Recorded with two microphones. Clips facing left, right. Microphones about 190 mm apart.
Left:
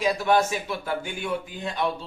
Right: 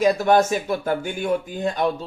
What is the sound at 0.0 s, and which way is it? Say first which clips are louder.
Speech: right 5 dB; 45° right (ahead or behind).